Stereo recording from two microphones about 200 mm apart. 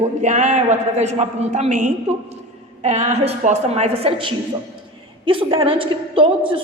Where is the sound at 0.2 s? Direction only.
35° right (ahead or behind).